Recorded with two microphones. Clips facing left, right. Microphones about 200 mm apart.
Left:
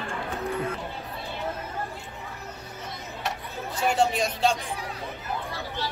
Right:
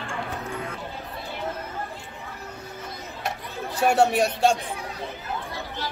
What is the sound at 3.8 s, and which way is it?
Speech, 65° right (ahead or behind).